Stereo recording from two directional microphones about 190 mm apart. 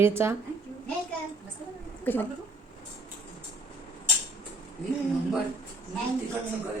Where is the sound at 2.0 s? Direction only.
10° left (ahead or behind).